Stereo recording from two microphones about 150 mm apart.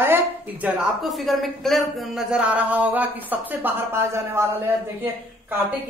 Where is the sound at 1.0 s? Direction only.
Centre (ahead or behind); by 4.4 s 15° right (ahead or behind).